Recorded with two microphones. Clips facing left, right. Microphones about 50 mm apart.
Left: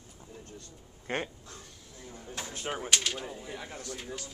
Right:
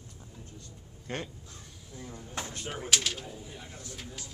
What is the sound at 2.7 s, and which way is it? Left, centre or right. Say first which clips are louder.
Speech: right 1 dB; centre.